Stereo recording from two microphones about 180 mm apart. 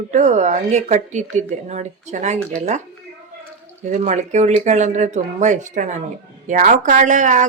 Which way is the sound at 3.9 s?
40° right (ahead or behind).